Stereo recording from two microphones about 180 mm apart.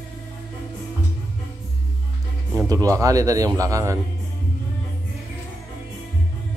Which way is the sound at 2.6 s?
20° right (ahead or behind).